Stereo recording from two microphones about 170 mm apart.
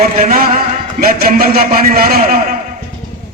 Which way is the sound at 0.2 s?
55° right (ahead or behind).